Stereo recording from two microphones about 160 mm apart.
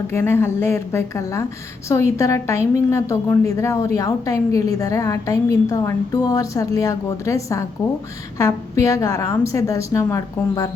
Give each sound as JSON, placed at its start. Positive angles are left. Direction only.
{"t": 0.1, "sound": "a woman's voice", "side_deg": 15}